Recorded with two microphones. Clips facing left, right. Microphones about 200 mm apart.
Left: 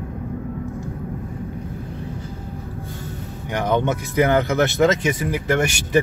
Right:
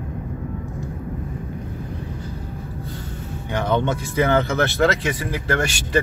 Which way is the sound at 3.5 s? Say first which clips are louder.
Left 1 dB; 15° left (ahead or behind).